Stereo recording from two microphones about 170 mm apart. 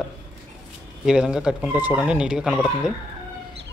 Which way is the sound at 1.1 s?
5° right (ahead or behind).